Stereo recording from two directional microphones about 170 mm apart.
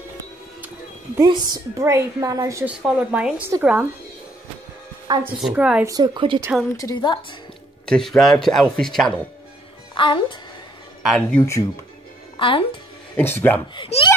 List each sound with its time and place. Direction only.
1.2 s a woman's voice: 25° right (ahead or behind)
2.6 s speech: 10° right (ahead or behind)
5.2 s speech: 5° right (ahead or behind)
5.9 s a woman's voice: 25° right (ahead or behind)
6.8 s a woman's voice: 25° left (ahead or behind)
7.8 s speech: 5° left (ahead or behind)
9.9 s a woman's voice: 30° left (ahead or behind)
11.1 s speech: 5° left (ahead or behind)
12.4 s speech: 30° left (ahead or behind)
13.1 s speech: 10° left (ahead or behind)
13.7 s speech: 30° left (ahead or behind)